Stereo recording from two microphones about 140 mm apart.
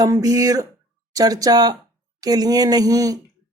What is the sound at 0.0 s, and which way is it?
Speech, 25° right (ahead or behind).